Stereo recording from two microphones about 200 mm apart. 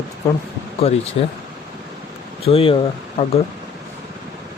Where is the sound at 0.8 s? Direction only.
30° left (ahead or behind).